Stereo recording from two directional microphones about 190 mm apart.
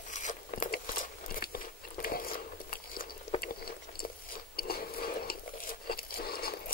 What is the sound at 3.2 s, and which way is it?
Biting, 50° left (ahead or behind).